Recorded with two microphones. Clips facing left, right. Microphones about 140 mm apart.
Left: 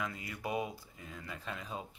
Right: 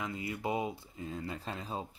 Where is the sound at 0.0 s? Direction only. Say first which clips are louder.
Right 3 dB; 25° right (ahead or behind).